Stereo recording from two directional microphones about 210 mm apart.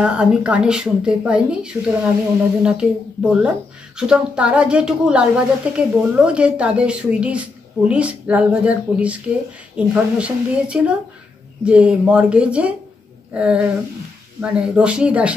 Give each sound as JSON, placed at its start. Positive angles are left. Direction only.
{"t": 0.0, "sound": "speech", "side_deg": -5}